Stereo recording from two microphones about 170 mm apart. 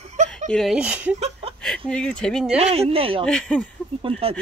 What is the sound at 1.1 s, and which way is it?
Chuckle, 40° right (ahead or behind).